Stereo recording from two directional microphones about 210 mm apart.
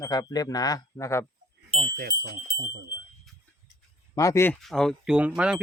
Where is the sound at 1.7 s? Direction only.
30° right (ahead or behind).